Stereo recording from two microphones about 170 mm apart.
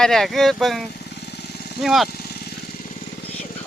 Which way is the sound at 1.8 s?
Centre (ahead or behind).